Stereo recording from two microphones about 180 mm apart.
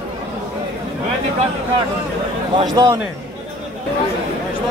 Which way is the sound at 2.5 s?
20° right (ahead or behind).